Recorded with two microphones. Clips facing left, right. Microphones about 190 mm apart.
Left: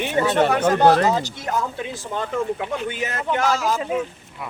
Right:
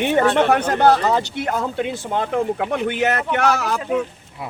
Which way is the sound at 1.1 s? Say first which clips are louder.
Right 2 dB; 65° right (ahead or behind).